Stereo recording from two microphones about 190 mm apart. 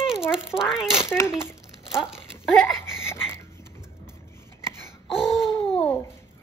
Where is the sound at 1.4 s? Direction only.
15° left (ahead or behind).